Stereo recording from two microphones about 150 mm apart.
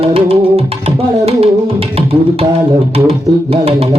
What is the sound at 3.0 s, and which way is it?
Music, 40° right (ahead or behind).